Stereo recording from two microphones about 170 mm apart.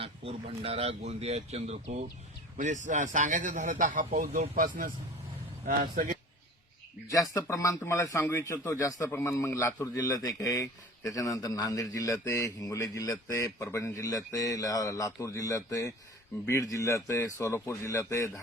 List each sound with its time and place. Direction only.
0.0 s a man's voice: 35° right (ahead or behind); by 6.1 s 55° right (ahead or behind)
7.1 s a man's voice: 20° left (ahead or behind)